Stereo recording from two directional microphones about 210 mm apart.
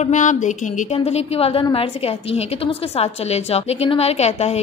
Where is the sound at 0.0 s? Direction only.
35° left (ahead or behind).